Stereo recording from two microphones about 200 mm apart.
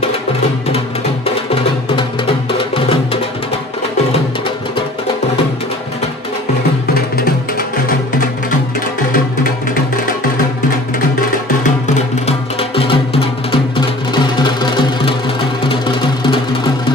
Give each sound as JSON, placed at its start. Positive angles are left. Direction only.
{"t": 0.7, "sound": "music", "side_deg": 30}
{"t": 12.3, "sound": "music", "side_deg": 25}